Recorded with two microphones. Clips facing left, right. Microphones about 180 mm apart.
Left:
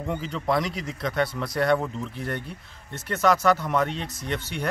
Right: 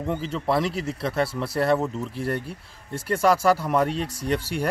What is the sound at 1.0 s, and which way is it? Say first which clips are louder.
A man's voice: even; 30° right (ahead or behind).